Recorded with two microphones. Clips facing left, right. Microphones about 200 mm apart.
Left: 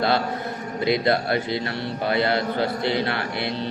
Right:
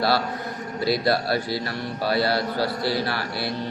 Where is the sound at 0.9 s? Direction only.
20° left (ahead or behind).